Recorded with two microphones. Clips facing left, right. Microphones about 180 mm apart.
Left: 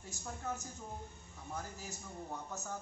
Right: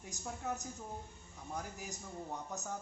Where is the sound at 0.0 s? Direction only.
15° right (ahead or behind).